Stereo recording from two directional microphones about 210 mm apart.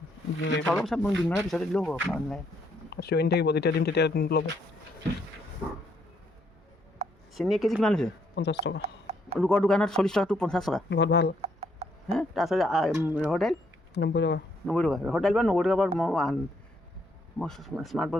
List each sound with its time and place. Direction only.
0.6 s speech: centre (ahead or behind)
2.9 s speech: 50° left (ahead or behind)
7.3 s speech: centre (ahead or behind)
8.4 s speech: 55° left (ahead or behind)
8.8 s a sound: 30° right (ahead or behind)
9.4 s speech: centre (ahead or behind)
10.8 s speech: 55° left (ahead or behind)
11.3 s a sound: 30° right (ahead or behind)
12.1 s speech: centre (ahead or behind)
13.9 s speech: 55° left (ahead or behind)
14.7 s speech: 5° left (ahead or behind)